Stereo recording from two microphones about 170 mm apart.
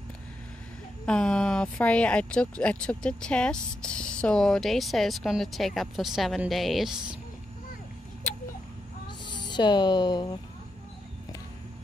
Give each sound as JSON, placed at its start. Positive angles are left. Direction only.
{"t": 1.0, "sound": "speech", "side_deg": 5}
{"t": 9.2, "sound": "speech", "side_deg": 25}